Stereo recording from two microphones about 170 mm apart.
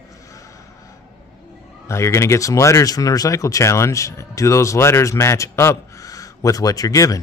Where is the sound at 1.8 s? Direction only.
15° left (ahead or behind).